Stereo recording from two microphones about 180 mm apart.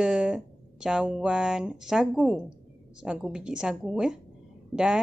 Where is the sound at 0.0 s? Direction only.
5° right (ahead or behind).